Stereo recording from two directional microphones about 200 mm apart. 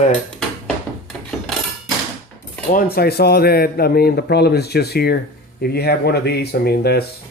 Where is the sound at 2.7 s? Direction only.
45° left (ahead or behind).